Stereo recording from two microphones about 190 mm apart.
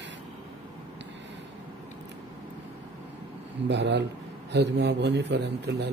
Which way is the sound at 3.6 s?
65° right (ahead or behind).